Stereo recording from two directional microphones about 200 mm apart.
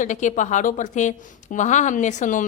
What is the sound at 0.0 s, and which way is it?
Speech, 40° left (ahead or behind).